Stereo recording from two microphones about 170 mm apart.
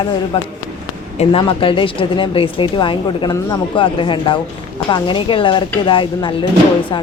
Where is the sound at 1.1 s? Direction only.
35° left (ahead or behind).